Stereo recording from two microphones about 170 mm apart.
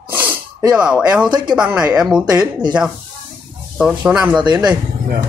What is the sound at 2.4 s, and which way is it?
Speech, 25° right (ahead or behind).